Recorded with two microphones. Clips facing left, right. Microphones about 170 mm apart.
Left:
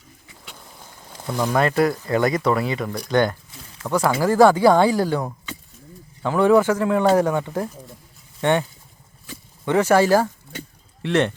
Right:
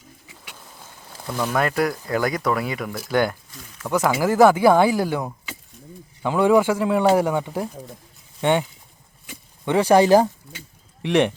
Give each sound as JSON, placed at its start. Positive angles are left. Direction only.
{"t": 0.5, "sound": "a sound", "side_deg": 15}
{"t": 1.5, "sound": "speech", "side_deg": 0}
{"t": 9.6, "sound": "speech", "side_deg": -15}